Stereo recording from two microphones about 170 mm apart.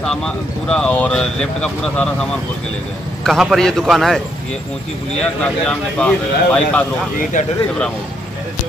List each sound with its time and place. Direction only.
0.0 s speech: 5° left (ahead or behind)
3.3 s speech: centre (ahead or behind)
5.2 s speech: 5° left (ahead or behind)
7.3 s speech: 50° left (ahead or behind)